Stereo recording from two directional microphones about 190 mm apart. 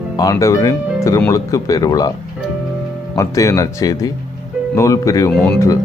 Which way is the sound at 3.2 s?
15° left (ahead or behind).